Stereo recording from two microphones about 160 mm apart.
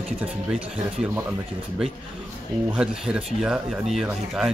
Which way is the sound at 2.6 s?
5° right (ahead or behind).